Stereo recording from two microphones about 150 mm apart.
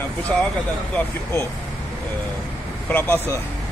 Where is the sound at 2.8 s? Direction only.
15° left (ahead or behind).